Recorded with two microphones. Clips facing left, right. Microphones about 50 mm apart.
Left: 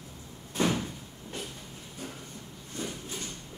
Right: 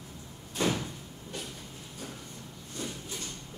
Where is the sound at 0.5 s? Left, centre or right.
Left.